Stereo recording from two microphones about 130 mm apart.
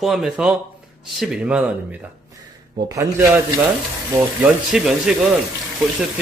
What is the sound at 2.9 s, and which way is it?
Speech, 20° right (ahead or behind).